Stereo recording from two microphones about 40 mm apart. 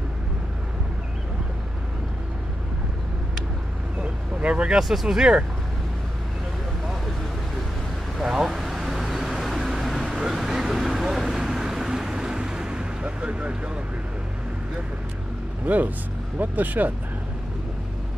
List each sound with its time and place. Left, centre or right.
4.0 s vehicle: right
4.7 s speech: centre
8.3 s vehicle: centre; by 13.6 s right
15.6 s speech: right